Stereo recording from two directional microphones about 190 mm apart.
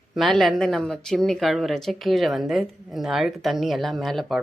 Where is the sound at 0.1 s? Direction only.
Centre (ahead or behind).